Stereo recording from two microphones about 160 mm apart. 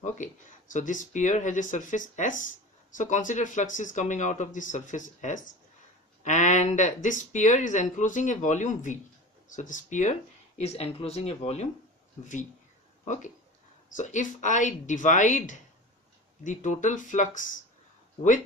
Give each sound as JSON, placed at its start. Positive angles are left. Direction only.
{"t": 0.2, "sound": "speech", "side_deg": 50}
{"t": 13.9, "sound": "speech", "side_deg": 50}